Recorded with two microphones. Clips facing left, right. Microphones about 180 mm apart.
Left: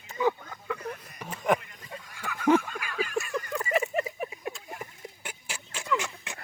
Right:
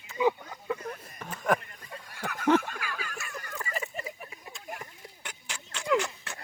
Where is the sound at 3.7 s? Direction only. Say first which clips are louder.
Left 10 dB; 70° left (ahead or behind).